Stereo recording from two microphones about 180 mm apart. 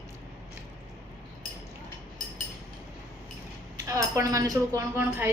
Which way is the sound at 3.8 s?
15° right (ahead or behind).